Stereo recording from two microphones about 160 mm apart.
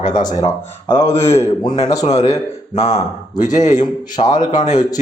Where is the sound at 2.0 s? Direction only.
40° left (ahead or behind).